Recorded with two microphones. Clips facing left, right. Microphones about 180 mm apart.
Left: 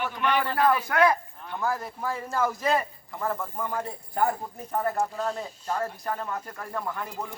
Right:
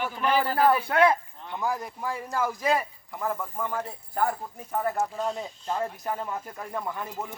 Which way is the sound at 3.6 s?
Centre (ahead or behind).